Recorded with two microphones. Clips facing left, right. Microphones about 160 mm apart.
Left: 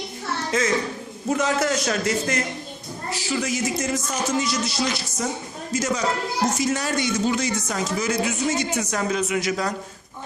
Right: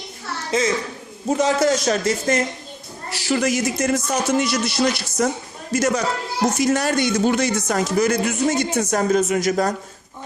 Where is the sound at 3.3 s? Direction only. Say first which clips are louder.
Right 5 dB; 70° right (ahead or behind); by 9.7 s 45° right (ahead or behind).